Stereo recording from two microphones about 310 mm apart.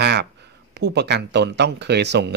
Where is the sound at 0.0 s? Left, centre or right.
Right.